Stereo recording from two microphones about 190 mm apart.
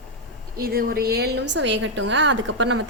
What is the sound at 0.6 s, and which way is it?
A woman's voice, 50° right (ahead or behind).